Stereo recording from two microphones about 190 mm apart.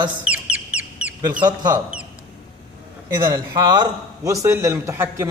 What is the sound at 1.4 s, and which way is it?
Speech, 20° right (ahead or behind).